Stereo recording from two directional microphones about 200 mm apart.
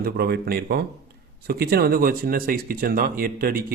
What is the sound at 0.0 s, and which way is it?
Speech, 50° right (ahead or behind).